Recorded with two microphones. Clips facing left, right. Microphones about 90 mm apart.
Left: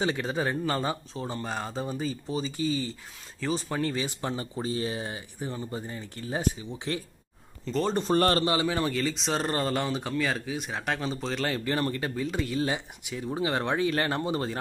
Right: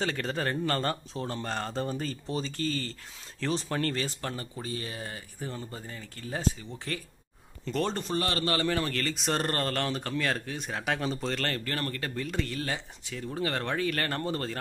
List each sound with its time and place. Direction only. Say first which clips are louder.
0.0 s speech: left 3 dB; 10° left (ahead or behind)
5.9 s speech: left 3 dB; 25° left (ahead or behind)
7.6 s speech: left 2 dB; centre (ahead or behind)
8.1 s a man's voice: left 7 dB; 45° left (ahead or behind)
8.5 s speech: left 2 dB; 15° left (ahead or behind)
9.1 s speech: left 1 dB; centre (ahead or behind); by 14.6 s 15° left (ahead or behind)